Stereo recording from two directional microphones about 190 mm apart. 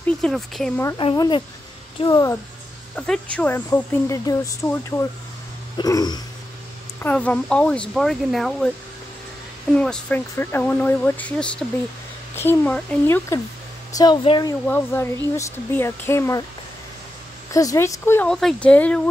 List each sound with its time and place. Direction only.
0.0 s speech: 5° left (ahead or behind)
0.9 s speech: 20° left (ahead or behind)
3.0 s speech: 5° left (ahead or behind)
7.0 s speech: 10° left (ahead or behind)
9.8 s speech: 5° left (ahead or behind); by 14.5 s 25° left (ahead or behind)
14.7 s speech: 10° left (ahead or behind)
17.5 s speech: 20° left (ahead or behind)